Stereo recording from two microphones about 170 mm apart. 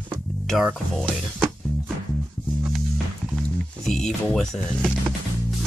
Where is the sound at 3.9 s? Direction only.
Centre (ahead or behind).